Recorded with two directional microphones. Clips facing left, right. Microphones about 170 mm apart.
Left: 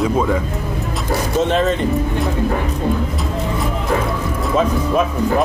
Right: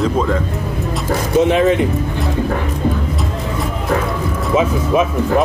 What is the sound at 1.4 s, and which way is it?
Speech, 10° right (ahead or behind).